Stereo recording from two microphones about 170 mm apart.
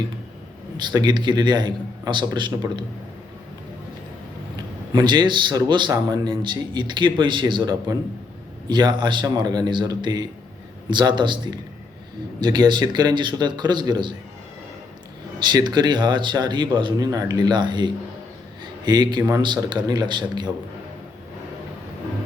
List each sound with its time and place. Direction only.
0.8 s a man's voice: 25° right (ahead or behind)
4.9 s a man's voice: 25° right (ahead or behind)
15.4 s a man's voice: 25° right (ahead or behind)